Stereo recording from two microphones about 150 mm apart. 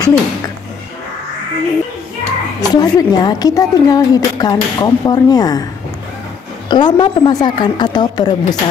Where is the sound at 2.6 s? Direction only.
30° left (ahead or behind).